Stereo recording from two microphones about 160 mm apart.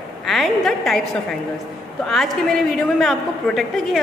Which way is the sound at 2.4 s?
Centre (ahead or behind).